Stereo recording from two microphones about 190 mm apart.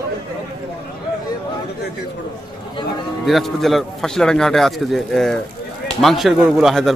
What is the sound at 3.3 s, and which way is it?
A man's voice, centre (ahead or behind).